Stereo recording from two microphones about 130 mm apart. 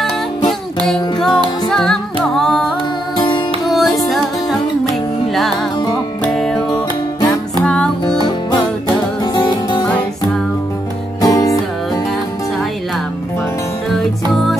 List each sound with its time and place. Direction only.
0.8 s music: 5° left (ahead or behind)
7.6 s music: 5° left (ahead or behind)
9.2 s music: 35° left (ahead or behind)
11.1 s music: 30° left (ahead or behind)
13.8 s music: centre (ahead or behind)